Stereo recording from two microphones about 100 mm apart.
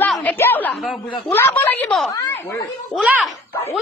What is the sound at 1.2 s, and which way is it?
Speech, 20° left (ahead or behind).